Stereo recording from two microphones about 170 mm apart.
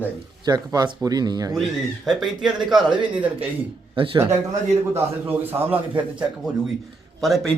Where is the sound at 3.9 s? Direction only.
30° right (ahead or behind).